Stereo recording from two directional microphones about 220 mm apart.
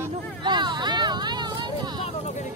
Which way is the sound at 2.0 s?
30° left (ahead or behind).